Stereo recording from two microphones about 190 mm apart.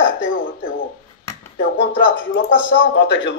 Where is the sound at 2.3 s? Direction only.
85° left.